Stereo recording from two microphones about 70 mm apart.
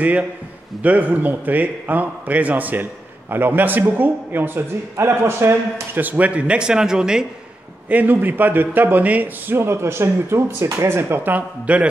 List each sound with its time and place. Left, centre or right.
0.8 s a man's voice: right
7.9 s a man's voice: right
11.3 s a man's voice: centre